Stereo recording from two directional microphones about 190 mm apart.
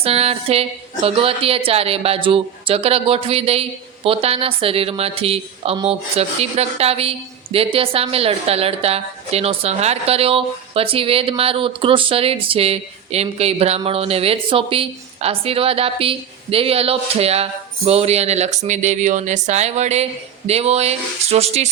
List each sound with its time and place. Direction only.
0.0 s a woman's voice: 30° right (ahead or behind)